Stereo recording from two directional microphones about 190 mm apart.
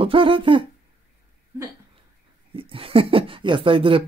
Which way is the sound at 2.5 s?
30° right (ahead or behind).